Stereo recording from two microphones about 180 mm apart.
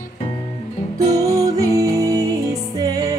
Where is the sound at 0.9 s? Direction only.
20° right (ahead or behind).